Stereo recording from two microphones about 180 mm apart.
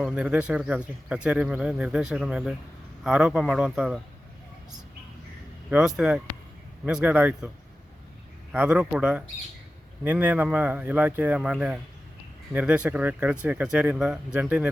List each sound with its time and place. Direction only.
0.0 s speech: 5° right (ahead or behind)
5.7 s speech: 5° right (ahead or behind)
8.5 s speech: 5° right (ahead or behind)